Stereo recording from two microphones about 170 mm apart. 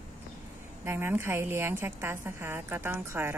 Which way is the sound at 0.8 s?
15° right (ahead or behind).